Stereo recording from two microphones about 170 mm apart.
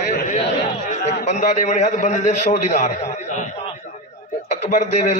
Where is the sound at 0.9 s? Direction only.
45° left (ahead or behind).